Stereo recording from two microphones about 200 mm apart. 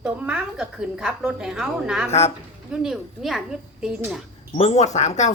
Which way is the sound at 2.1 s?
30° left (ahead or behind).